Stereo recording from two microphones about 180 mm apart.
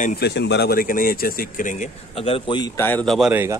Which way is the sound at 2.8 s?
10° left (ahead or behind).